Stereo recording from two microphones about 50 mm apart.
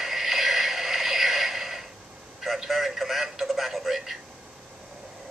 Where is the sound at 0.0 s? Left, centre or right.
Centre.